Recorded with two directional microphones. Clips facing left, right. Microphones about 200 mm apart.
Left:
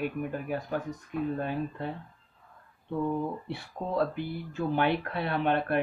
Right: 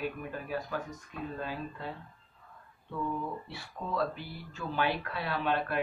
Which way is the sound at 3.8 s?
40° left (ahead or behind).